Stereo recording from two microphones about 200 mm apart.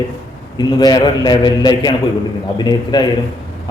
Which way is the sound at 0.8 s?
20° left (ahead or behind).